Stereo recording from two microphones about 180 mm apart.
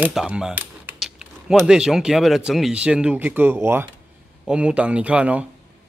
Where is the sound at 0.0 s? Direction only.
5° right (ahead or behind).